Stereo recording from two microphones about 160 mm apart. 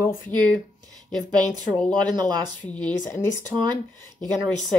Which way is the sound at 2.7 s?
10° left (ahead or behind).